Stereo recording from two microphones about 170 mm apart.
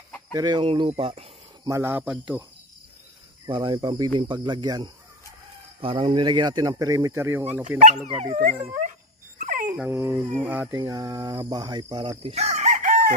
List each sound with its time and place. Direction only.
0.3 s speech: 25° right (ahead or behind)
1.6 s speech: 15° right (ahead or behind)
3.4 s speech: 25° right (ahead or behind)
8.1 s speech: 40° right (ahead or behind)
9.4 s dog: 50° right (ahead or behind)
9.8 s speech: 15° right (ahead or behind)
10.7 s speech: 20° right (ahead or behind); by 13.1 s 50° right (ahead or behind)